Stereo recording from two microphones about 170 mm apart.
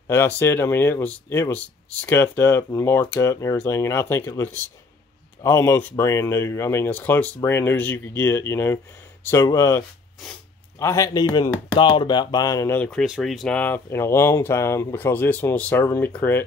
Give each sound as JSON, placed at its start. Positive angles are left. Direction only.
{"t": 0.1, "sound": "speech", "side_deg": 15}
{"t": 13.0, "sound": "speech", "side_deg": 0}